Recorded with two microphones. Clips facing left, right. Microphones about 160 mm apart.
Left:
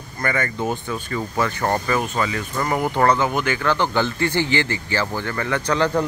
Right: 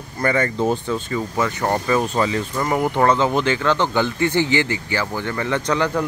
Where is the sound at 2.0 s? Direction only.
25° right (ahead or behind).